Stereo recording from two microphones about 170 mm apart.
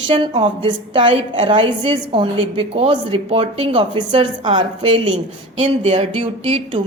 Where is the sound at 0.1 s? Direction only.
30° right (ahead or behind).